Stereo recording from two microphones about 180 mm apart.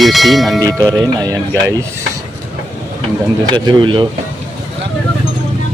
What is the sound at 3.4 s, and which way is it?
Speech, 25° right (ahead or behind).